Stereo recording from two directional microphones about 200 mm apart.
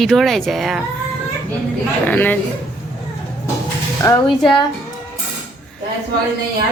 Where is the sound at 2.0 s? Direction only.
10° left (ahead or behind).